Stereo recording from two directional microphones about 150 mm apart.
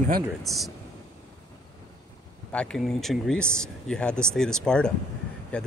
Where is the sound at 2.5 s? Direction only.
5° left (ahead or behind).